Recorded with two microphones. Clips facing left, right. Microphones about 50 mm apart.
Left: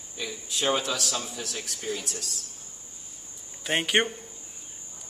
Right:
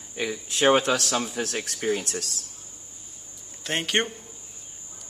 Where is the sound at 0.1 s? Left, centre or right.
Right.